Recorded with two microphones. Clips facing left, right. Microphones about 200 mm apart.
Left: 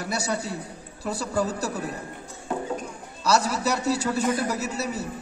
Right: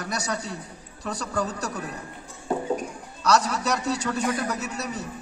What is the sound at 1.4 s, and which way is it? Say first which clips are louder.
Speech: left 2 dB; 25° left (ahead or behind).